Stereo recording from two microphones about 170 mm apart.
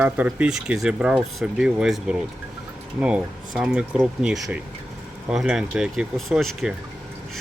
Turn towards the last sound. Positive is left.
turn(degrees=0)  # may be behind; listen again after turning